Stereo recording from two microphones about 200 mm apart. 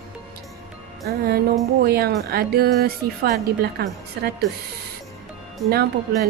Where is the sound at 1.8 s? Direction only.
50° right (ahead or behind).